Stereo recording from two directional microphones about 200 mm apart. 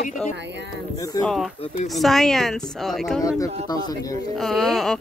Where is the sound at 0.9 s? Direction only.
20° left (ahead or behind).